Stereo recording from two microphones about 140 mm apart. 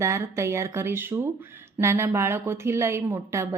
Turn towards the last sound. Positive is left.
turn(degrees=-20)  # may be behind; listen again after turning